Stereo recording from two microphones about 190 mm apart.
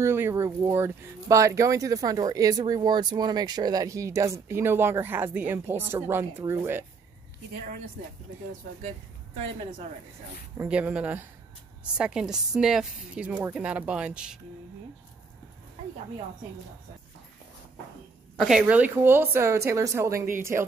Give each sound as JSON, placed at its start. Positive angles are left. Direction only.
{"t": 0.0, "sound": "speech", "side_deg": -15}
{"t": 9.4, "sound": "a woman's voice", "side_deg": -35}
{"t": 10.6, "sound": "a woman's voice", "side_deg": -5}
{"t": 18.4, "sound": "speech", "side_deg": -5}